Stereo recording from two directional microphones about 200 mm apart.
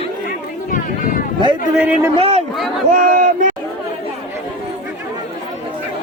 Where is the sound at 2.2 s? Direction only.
30° right (ahead or behind).